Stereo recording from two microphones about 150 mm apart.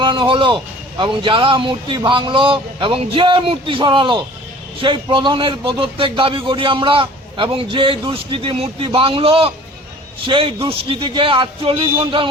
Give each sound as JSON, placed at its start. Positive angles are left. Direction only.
{"t": 0.0, "sound": "speech", "side_deg": -35}